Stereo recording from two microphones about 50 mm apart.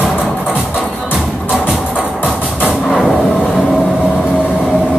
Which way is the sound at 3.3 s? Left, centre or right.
Centre.